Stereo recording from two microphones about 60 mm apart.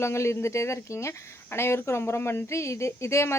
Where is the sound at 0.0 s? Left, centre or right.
Left.